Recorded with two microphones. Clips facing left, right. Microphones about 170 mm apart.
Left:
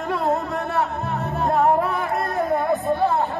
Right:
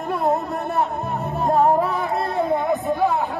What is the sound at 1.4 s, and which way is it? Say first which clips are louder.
Music: right 1 dB; 10° right (ahead or behind).